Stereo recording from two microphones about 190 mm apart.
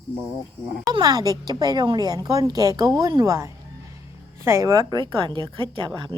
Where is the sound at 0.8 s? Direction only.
20° right (ahead or behind).